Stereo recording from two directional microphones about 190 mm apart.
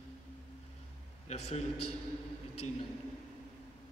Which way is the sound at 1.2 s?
35° left (ahead or behind).